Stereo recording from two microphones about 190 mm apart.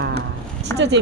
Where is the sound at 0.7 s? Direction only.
15° left (ahead or behind).